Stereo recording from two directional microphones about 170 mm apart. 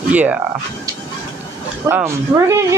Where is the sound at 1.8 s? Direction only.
15° right (ahead or behind).